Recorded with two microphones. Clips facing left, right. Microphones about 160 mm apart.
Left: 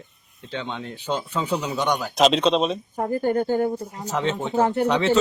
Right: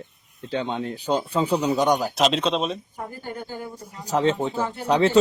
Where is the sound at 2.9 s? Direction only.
50° left (ahead or behind).